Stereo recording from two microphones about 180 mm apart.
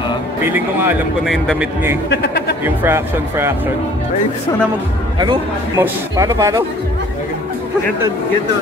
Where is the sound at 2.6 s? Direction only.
10° right (ahead or behind).